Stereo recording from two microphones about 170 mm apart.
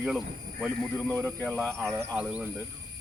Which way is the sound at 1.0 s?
5° left (ahead or behind).